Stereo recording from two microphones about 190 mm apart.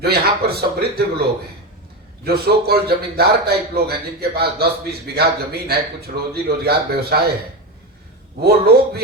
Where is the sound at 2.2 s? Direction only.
55° right (ahead or behind).